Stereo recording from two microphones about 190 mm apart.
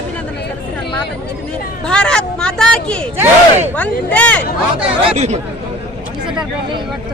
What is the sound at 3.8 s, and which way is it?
Speech, 10° left (ahead or behind).